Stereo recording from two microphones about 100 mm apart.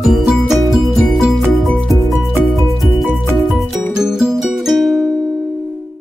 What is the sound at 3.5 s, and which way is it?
Music, centre (ahead or behind).